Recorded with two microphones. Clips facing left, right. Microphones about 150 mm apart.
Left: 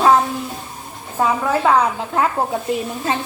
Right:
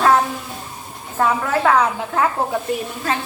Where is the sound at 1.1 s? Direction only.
15° left (ahead or behind).